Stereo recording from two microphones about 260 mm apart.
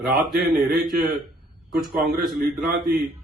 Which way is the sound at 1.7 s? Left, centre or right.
Right.